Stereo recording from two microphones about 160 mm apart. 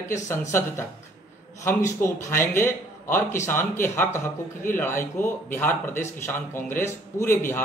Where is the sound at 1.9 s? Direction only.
20° left (ahead or behind).